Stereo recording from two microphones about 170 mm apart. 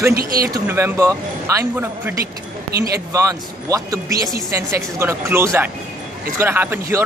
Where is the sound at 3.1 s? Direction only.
20° right (ahead or behind).